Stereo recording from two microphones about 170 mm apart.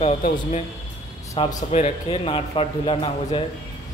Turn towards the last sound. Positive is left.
turn(degrees=35)  # may be behind; listen again after turning